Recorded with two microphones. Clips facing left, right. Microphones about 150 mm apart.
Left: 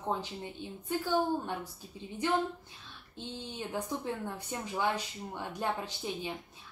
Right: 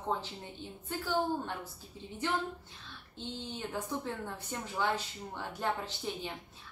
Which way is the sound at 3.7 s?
15° left (ahead or behind).